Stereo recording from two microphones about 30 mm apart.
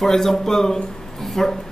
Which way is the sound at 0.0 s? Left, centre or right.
Centre.